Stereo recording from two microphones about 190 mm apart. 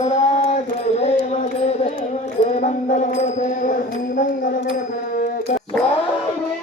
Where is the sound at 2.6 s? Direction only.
40° left (ahead or behind).